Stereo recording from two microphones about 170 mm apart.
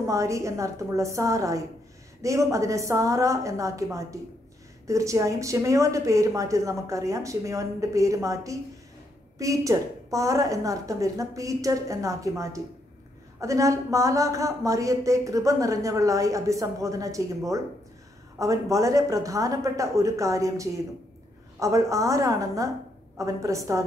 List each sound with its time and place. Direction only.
0.0 s a woman's voice: 20° right (ahead or behind)
18.4 s a woman's voice: 20° right (ahead or behind)